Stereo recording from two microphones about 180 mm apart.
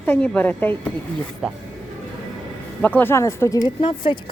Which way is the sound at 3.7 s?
30° left (ahead or behind).